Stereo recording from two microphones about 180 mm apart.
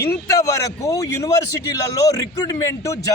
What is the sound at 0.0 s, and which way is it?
A man's voice, 15° left (ahead or behind).